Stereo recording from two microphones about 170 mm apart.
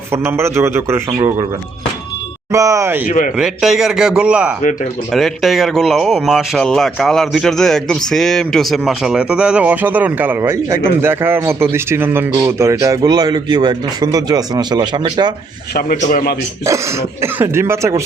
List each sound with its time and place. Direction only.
0.1 s a man's voice: 15° right (ahead or behind)
2.5 s speech: 20° right (ahead or behind)
3.1 s a man's voice: 50° left (ahead or behind)
3.3 s a man's voice: 5° right (ahead or behind); by 15.3 s 25° right (ahead or behind)
15.7 s a man's voice: 55° left (ahead or behind)
16.6 s a man's voice: 15° right (ahead or behind)